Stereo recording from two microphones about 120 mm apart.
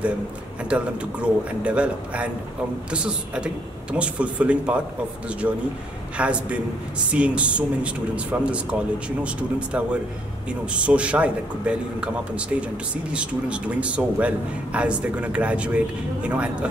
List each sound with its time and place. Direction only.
0.7 s a man's voice: 10° right (ahead or behind)